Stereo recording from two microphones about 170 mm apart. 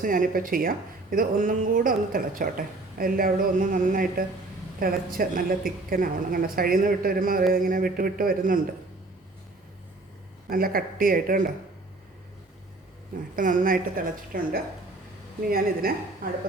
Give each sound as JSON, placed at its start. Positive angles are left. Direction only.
{"t": 0.0, "sound": "speech", "side_deg": -55}
{"t": 10.5, "sound": "speech", "side_deg": -60}
{"t": 13.3, "sound": "speech", "side_deg": -50}